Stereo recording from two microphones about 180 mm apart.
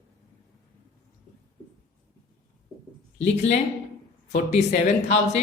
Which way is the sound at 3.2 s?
40° left (ahead or behind).